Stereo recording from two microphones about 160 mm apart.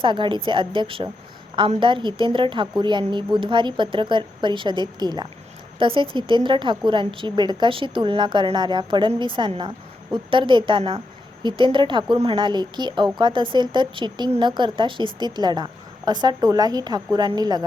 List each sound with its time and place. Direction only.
0.0 s a woman's voice: 30° right (ahead or behind)